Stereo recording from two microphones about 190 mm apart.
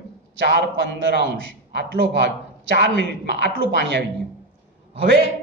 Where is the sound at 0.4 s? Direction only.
65° right (ahead or behind).